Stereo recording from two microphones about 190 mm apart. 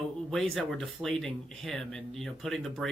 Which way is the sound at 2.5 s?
Centre (ahead or behind).